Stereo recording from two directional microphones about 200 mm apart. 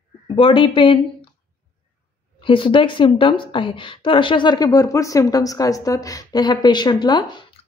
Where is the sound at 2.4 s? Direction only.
25° left (ahead or behind).